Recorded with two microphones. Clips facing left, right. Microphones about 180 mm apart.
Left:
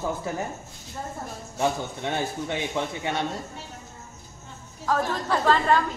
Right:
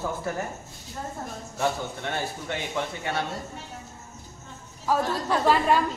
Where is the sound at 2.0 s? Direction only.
15° left (ahead or behind).